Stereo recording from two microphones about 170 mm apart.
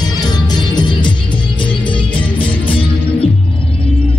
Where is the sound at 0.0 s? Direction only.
25° left (ahead or behind).